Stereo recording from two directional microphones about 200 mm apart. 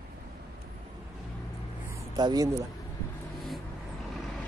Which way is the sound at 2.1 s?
20° right (ahead or behind).